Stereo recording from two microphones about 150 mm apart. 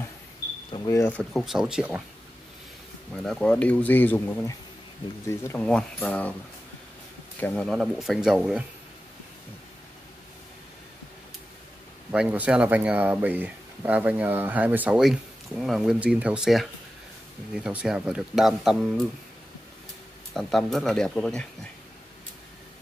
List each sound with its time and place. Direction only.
0.8 s speech: 20° left (ahead or behind)
1.1 s speech: centre (ahead or behind)
3.3 s speech: 5° left (ahead or behind)
7.3 s speech: 10° left (ahead or behind)
7.6 s speech: centre (ahead or behind)
12.1 s speech: 10° right (ahead or behind)
17.6 s speech: 5° right (ahead or behind)
20.3 s speech: centre (ahead or behind)